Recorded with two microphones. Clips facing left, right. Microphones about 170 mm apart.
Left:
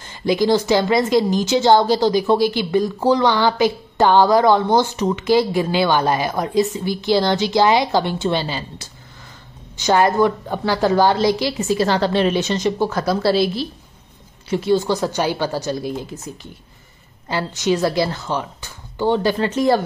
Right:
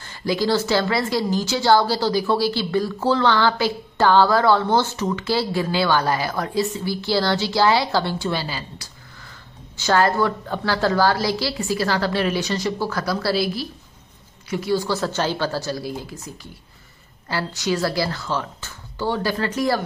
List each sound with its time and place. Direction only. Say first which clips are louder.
0.0 s a woman's voice: left 4 dB; 20° left (ahead or behind)
17.3 s a woman's voice: left 4 dB; 20° left (ahead or behind)